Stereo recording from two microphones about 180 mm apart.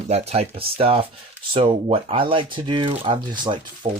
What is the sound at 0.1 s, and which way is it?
Speech, 35° right (ahead or behind).